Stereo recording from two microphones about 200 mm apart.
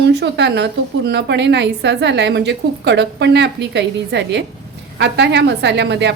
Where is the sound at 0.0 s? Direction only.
60° right (ahead or behind).